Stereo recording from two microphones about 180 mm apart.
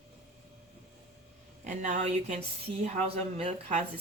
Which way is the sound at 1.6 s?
45° right (ahead or behind).